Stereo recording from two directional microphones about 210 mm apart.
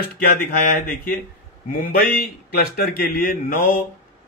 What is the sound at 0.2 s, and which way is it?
Speech, 45° left (ahead or behind).